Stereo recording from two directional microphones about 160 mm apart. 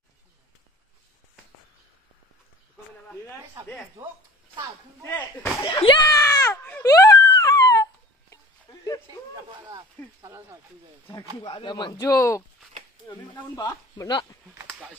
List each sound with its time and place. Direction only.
4.0 s speech: 20° right (ahead or behind)
5.0 s speech: 10° left (ahead or behind)
5.7 s a sound: 30° left (ahead or behind)
9.6 s speech: 20° right (ahead or behind)
11.4 s speech: 30° left (ahead or behind)
13.7 s speech: 20° left (ahead or behind)